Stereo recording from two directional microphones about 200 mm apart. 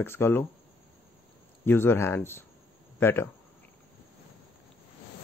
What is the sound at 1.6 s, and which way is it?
Speech, 10° left (ahead or behind).